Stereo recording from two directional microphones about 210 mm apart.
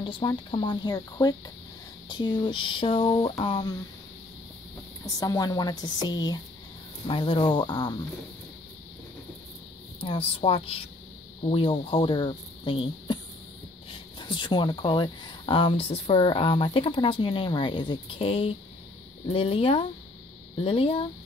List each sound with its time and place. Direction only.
0.0 s speech: 25° left (ahead or behind)
5.0 s speech: 15° left (ahead or behind)
9.9 s speech: 25° left (ahead or behind)
14.2 s speech: 20° left (ahead or behind)